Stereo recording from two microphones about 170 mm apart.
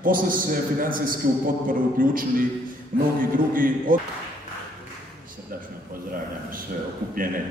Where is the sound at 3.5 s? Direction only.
55° right (ahead or behind).